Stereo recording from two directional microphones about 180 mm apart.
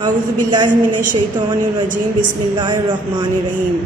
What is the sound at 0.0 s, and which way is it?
Speech, 25° right (ahead or behind).